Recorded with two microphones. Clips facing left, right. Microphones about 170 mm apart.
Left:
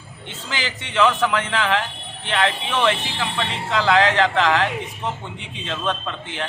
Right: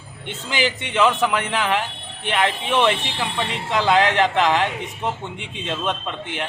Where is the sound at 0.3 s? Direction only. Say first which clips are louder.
Right 6 dB; 15° right (ahead or behind).